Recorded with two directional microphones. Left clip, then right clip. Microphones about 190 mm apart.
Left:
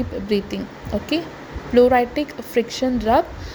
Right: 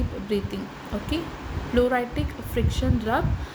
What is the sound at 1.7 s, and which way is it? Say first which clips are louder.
Speech: left 8 dB; 35° left (ahead or behind).